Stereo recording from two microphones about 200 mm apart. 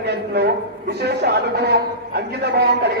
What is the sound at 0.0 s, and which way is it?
A man's voice, 55° right (ahead or behind).